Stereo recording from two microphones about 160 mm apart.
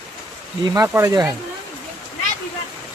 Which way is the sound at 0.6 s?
20° right (ahead or behind).